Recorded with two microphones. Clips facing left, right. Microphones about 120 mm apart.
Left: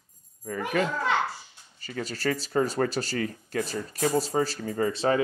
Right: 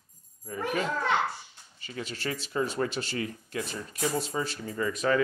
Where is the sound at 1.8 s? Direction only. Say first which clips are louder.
Left 4 dB; 40° left (ahead or behind).